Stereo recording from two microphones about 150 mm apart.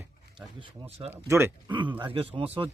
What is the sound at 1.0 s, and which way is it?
Speech, 15° right (ahead or behind).